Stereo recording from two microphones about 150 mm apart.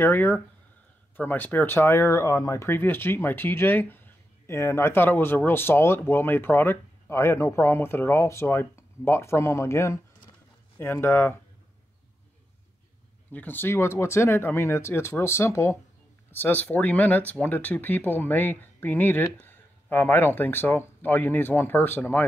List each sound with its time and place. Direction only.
0.0 s speech: 15° left (ahead or behind)
13.3 s speech: 10° left (ahead or behind)